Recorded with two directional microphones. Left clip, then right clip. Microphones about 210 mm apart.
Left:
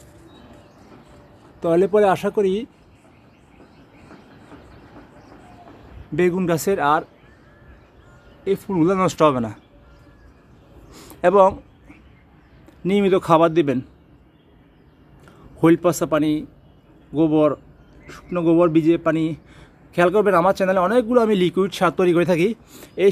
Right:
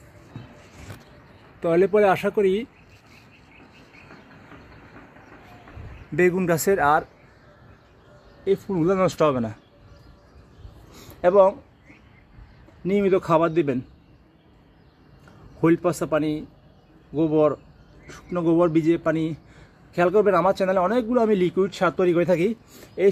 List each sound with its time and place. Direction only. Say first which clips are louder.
1.6 s a man's voice: left 2 dB; 5° left (ahead or behind)
1.9 s a man's voice: left 2 dB; 15° left (ahead or behind)
6.1 s speech: left 1 dB; centre (ahead or behind)
8.5 s speech: left 2 dB; 5° left (ahead or behind)
10.9 s a sound: left 3 dB; 15° left (ahead or behind)
12.8 s a man's voice: left 3 dB; 10° left (ahead or behind)
15.6 s a man's voice: left 4 dB; 10° left (ahead or behind)